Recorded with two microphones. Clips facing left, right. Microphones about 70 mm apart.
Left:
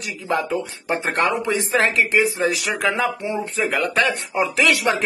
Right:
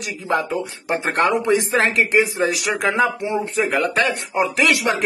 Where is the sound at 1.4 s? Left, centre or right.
Right.